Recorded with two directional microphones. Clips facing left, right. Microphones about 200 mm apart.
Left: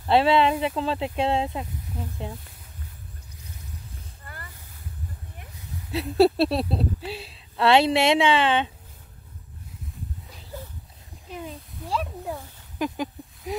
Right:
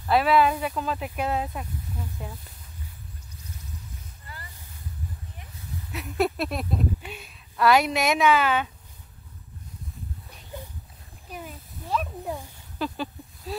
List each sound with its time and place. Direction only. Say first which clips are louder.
0.0 s speech: left 1 dB; 25° left (ahead or behind)
5.9 s speech: left 7 dB; 30° left (ahead or behind)
12.7 s a sound: left 3 dB; 15° left (ahead or behind)